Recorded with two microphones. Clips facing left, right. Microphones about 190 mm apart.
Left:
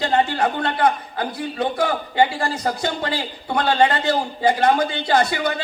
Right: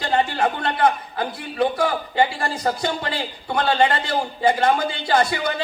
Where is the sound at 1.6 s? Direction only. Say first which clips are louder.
Right 2 dB; 25° left (ahead or behind).